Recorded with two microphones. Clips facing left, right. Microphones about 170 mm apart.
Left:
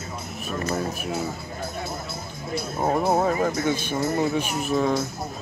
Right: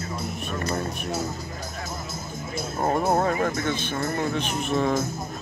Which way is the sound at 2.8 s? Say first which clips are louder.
Left 1 dB; centre (ahead or behind).